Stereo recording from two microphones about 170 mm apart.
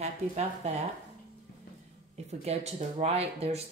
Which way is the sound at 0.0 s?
40° right (ahead or behind).